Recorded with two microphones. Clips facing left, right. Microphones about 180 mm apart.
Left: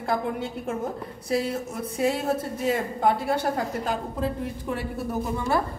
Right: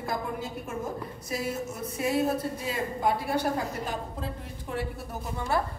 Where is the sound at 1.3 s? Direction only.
65° left (ahead or behind).